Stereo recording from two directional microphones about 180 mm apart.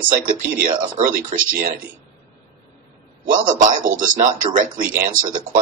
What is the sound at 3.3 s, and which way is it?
Speech, 45° right (ahead or behind).